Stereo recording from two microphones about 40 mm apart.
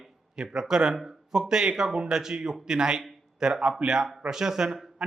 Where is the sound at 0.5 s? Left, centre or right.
Centre.